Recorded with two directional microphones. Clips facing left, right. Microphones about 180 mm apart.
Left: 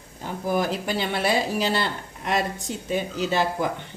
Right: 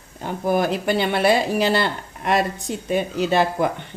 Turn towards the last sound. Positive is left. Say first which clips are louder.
# right 4 dB
turn(degrees=-60)  # may be behind; listen again after turning